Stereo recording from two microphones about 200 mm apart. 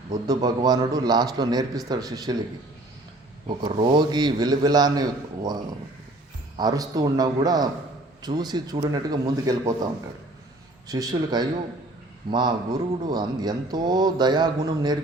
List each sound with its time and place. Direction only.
0.3 s a man's voice: 20° right (ahead or behind)
3.6 s a man's voice: 25° right (ahead or behind)